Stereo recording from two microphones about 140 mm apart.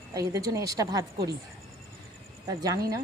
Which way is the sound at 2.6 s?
25° right (ahead or behind).